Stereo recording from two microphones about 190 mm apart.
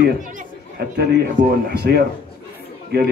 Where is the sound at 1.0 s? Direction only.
55° right (ahead or behind).